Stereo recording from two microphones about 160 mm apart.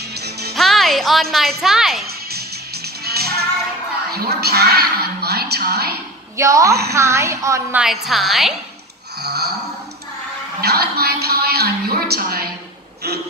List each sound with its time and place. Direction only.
0.1 s music: 90° right
0.6 s music: centre (ahead or behind)
1.6 s a woman's voice: centre (ahead or behind)
2.3 s music: 80° right
4.1 s a sound: 80° right
6.3 s a woman's voice: 20° right (ahead or behind)
7.8 s a woman's voice: centre (ahead or behind)
9.2 s gasp: 90° right
10.6 s a woman's voice: 80° right